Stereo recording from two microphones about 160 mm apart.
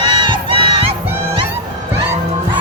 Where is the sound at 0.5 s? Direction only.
35° right (ahead or behind).